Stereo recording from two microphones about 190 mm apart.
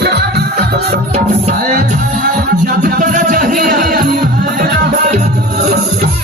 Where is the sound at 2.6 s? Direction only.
50° right (ahead or behind).